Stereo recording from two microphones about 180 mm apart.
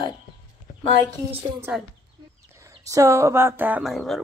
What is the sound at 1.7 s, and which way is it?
Speech, 10° right (ahead or behind).